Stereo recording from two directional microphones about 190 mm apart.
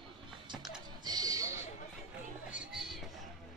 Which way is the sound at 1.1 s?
20° right (ahead or behind).